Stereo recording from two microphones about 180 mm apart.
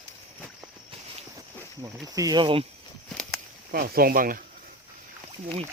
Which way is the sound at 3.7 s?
55° right (ahead or behind).